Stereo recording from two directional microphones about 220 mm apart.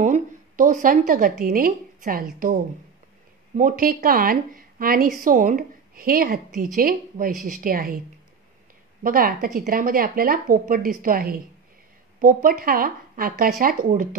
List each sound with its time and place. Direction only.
0.0 s a sound: 35° right (ahead or behind)
1.4 s a woman's voice: 40° right (ahead or behind)
3.5 s a woman's voice: 40° right (ahead or behind)
9.0 s a woman's voice: 40° right (ahead or behind)